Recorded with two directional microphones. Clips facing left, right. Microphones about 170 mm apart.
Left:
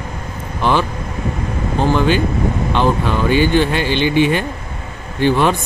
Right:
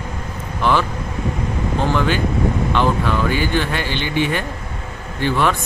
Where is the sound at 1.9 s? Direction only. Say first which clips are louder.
Left 5 dB; 20° left (ahead or behind).